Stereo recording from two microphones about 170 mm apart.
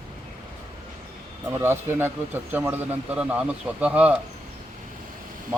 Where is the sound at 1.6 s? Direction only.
15° right (ahead or behind).